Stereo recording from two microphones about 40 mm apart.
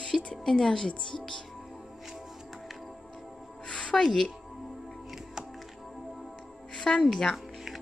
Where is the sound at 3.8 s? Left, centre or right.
Centre.